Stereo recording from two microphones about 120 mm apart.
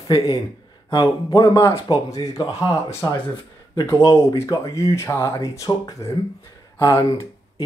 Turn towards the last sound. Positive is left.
turn(degrees=25)  # may be behind; listen again after turning